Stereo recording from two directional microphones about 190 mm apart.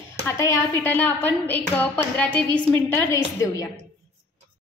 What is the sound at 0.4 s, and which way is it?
A woman's voice, 15° left (ahead or behind).